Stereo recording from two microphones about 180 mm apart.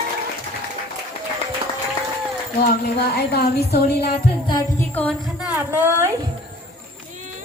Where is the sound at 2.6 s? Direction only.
65° left (ahead or behind).